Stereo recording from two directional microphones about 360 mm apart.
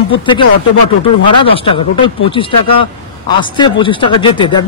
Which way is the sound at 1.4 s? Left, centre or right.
Centre.